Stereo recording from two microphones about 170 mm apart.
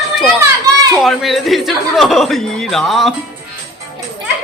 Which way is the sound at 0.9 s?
Centre (ahead or behind).